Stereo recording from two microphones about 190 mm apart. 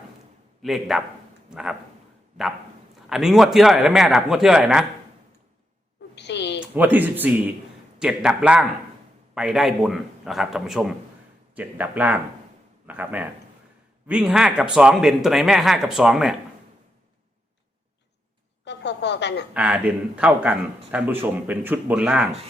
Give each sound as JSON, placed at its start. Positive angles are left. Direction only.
{"t": 0.6, "sound": "speech", "side_deg": 0}
{"t": 3.1, "sound": "speech", "side_deg": 0}
{"t": 6.1, "sound": "a sound", "side_deg": 65}
{"t": 6.6, "sound": "speech", "side_deg": -10}
{"t": 18.6, "sound": "a sound", "side_deg": 65}
{"t": 19.5, "sound": "speech", "side_deg": -10}